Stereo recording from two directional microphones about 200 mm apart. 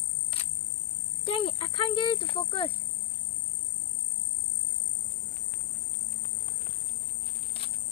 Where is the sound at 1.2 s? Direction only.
25° left (ahead or behind).